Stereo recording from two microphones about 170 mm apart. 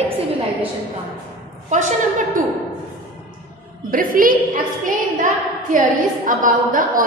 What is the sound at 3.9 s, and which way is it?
Speech, 55° right (ahead or behind).